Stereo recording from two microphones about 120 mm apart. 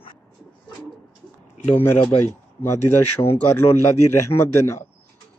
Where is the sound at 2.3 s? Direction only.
20° left (ahead or behind).